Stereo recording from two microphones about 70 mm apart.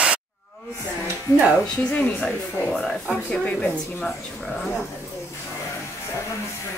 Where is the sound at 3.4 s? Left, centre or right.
Centre.